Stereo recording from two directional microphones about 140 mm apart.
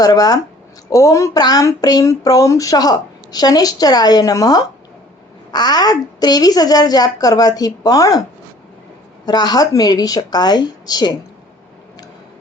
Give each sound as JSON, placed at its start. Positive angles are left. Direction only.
{"t": 0.0, "sound": "speech", "side_deg": 25}
{"t": 9.2, "sound": "speech", "side_deg": 30}